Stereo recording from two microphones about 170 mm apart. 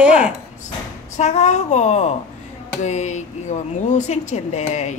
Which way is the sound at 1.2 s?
40° left (ahead or behind).